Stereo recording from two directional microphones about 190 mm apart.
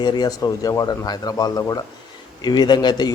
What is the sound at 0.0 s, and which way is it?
A man's voice, 20° left (ahead or behind).